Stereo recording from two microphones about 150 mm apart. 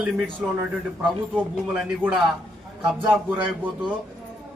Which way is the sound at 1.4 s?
10° right (ahead or behind).